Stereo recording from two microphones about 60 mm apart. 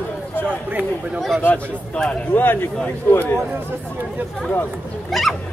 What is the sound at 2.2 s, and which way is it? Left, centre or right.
Speech, left.